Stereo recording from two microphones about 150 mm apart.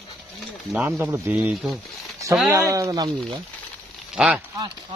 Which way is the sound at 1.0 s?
15° right (ahead or behind).